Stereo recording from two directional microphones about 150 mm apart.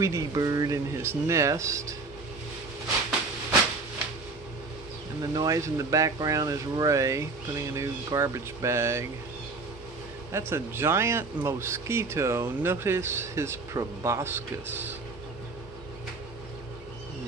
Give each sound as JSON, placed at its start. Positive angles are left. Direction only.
{"t": 0.0, "sound": "speech", "side_deg": -20}
{"t": 5.2, "sound": "speech", "side_deg": -25}
{"t": 10.3, "sound": "speech", "side_deg": -15}